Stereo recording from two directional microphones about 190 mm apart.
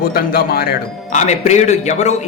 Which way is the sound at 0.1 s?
50° left (ahead or behind).